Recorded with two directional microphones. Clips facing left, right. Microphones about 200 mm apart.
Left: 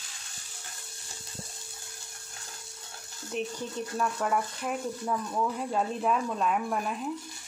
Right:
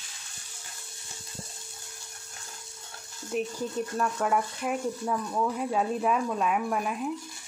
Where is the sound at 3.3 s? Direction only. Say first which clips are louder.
Right 3 dB; 5° right (ahead or behind).